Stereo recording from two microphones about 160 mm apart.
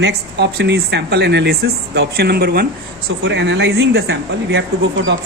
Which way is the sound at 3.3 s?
90° right.